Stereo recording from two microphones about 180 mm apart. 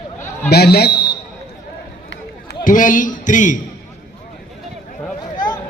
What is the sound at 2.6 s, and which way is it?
Speech, 50° left (ahead or behind).